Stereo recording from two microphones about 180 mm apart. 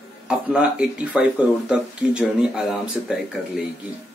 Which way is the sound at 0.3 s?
5° right (ahead or behind).